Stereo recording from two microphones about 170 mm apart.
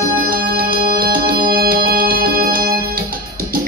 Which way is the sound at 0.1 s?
55° right (ahead or behind).